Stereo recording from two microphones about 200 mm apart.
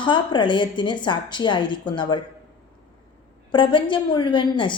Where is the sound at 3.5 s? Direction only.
25° left (ahead or behind).